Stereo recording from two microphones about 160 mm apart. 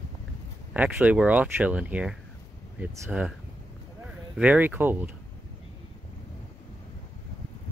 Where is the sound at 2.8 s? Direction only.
20° right (ahead or behind).